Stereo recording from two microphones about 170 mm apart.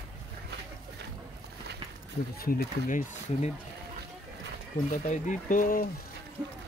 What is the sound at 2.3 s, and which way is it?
Speech, 60° left (ahead or behind).